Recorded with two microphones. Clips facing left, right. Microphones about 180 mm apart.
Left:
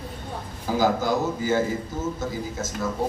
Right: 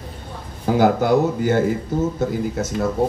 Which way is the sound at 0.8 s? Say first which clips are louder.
Right 6 dB; 60° right (ahead or behind).